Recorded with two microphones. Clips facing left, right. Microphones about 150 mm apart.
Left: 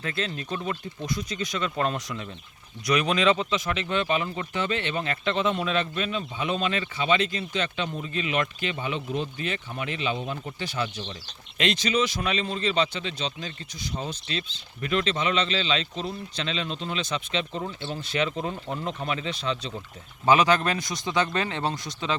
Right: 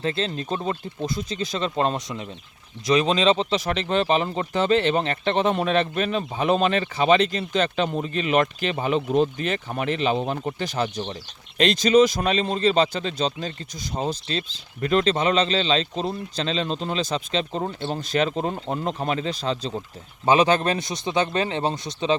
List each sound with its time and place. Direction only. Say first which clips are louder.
0.0 s speech: right 5 dB; 30° right (ahead or behind)
5.5 s speech: right 5 dB; 50° right (ahead or behind)
17.7 s speech: right 6 dB; 50° right (ahead or behind)
20.2 s speech: right 2 dB; 25° right (ahead or behind)